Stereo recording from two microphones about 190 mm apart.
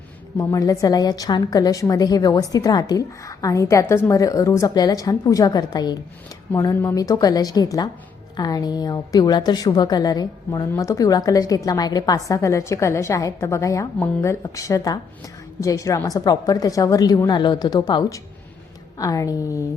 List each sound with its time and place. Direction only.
0.3 s a woman's voice: 15° left (ahead or behind)